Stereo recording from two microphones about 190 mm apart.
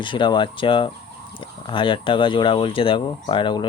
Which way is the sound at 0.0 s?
25° left (ahead or behind).